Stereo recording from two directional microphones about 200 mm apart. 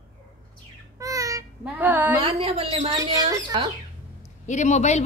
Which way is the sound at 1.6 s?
10° right (ahead or behind).